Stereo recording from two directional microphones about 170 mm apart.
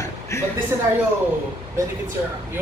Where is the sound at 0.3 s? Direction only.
15° left (ahead or behind).